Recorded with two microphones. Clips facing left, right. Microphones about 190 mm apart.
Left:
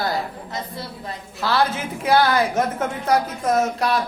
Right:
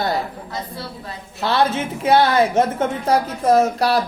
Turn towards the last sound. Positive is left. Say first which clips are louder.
# right 4 dB
turn(degrees=-35)  # may be behind; listen again after turning